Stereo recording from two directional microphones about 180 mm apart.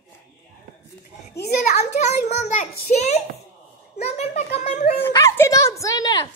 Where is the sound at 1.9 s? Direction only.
40° left (ahead or behind).